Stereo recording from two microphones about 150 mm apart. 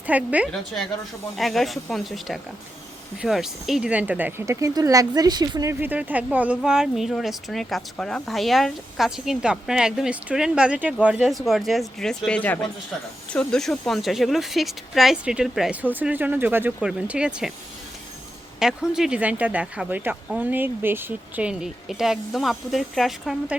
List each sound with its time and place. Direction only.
0.1 s speech: 10° right (ahead or behind); by 5.7 s 25° right (ahead or behind)
5.8 s speech: 10° right (ahead or behind)
18.6 s speech: 5° right (ahead or behind)